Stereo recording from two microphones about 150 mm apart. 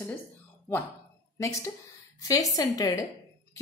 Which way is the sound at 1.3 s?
20° left (ahead or behind).